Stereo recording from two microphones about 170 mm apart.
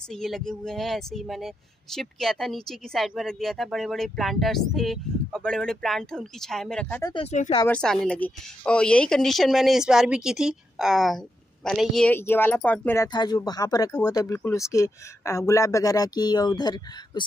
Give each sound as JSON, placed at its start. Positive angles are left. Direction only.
{"t": 0.1, "sound": "speech", "side_deg": 0}
{"t": 7.0, "sound": "speech", "side_deg": 25}
{"t": 7.2, "sound": "speech", "side_deg": 40}
{"t": 7.6, "sound": "speech", "side_deg": 5}